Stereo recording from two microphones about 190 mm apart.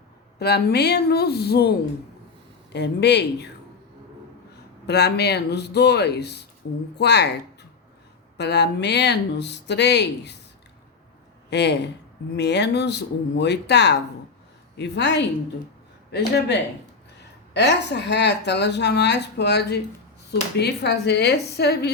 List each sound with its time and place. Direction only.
0.3 s speech: 60° left (ahead or behind)
2.7 s speech: 60° left (ahead or behind)
4.9 s speech: 60° left (ahead or behind)
11.5 s speech: 65° left (ahead or behind)